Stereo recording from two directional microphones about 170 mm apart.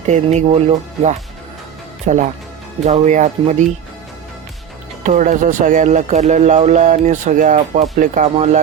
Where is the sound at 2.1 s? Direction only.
45° right (ahead or behind).